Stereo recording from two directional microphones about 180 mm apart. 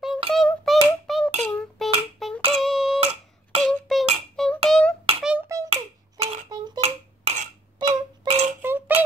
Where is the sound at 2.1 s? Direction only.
Centre (ahead or behind).